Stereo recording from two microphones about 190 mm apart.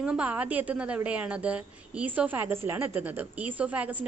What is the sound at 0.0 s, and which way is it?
A woman's voice, 5° right (ahead or behind).